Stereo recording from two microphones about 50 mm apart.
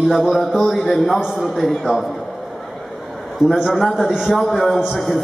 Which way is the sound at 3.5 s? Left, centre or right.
Centre.